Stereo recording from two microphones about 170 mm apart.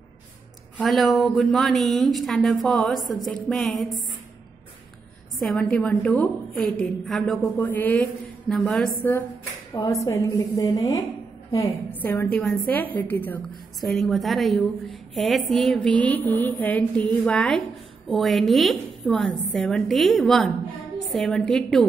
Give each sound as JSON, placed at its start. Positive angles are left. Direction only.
{"t": 0.7, "sound": "a woman's voice", "side_deg": 0}
{"t": 5.4, "sound": "a woman's voice", "side_deg": 5}
{"t": 9.8, "sound": "a woman's voice", "side_deg": 20}